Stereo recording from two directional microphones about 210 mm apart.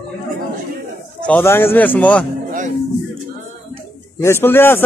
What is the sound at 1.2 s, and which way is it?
A man's voice, 10° left (ahead or behind).